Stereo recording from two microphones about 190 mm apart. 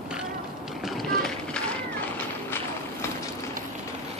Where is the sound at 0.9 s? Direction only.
Centre (ahead or behind).